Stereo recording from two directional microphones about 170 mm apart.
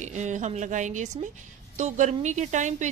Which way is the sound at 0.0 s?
45° right (ahead or behind).